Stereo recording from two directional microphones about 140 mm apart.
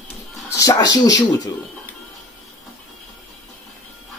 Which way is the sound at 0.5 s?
25° left (ahead or behind).